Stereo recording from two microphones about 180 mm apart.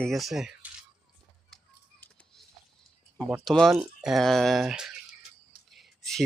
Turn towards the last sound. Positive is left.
turn(degrees=0)  # may be behind; listen again after turning